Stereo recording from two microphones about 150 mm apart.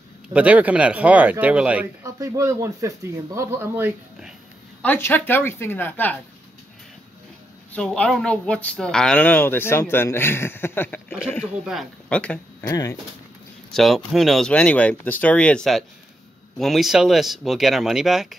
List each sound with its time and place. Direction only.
0.3 s speech: 10° right (ahead or behind)
2.0 s speech: 20° right (ahead or behind)
4.8 s speech: 15° left (ahead or behind)
7.7 s speech: 5° left (ahead or behind)
11.6 s speech: centre (ahead or behind)
12.6 s speech: 20° left (ahead or behind)
13.7 s speech: centre (ahead or behind)